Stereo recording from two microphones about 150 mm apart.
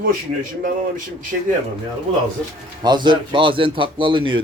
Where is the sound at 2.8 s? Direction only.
30° right (ahead or behind).